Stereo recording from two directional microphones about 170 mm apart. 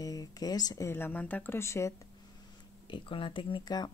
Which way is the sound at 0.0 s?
20° left (ahead or behind).